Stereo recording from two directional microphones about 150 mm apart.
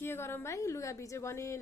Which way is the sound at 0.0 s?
15° left (ahead or behind).